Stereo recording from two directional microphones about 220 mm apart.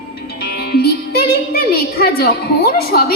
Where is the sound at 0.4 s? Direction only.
45° left (ahead or behind).